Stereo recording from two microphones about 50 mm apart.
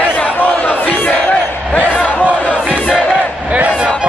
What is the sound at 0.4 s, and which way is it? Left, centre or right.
Crowd, left.